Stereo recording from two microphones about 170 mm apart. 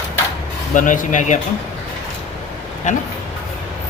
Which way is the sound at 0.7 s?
50° left (ahead or behind).